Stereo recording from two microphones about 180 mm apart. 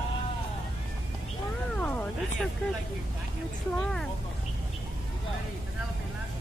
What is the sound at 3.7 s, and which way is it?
Speech, 5° left (ahead or behind).